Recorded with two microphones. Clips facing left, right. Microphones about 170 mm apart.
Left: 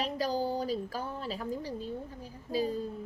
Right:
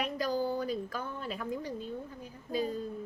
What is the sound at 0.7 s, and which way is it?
A woman's voice, 35° left (ahead or behind).